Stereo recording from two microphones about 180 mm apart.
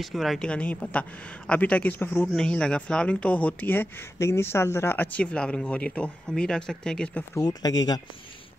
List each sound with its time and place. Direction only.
0.0 s speech: centre (ahead or behind)
7.3 s speech: 20° left (ahead or behind)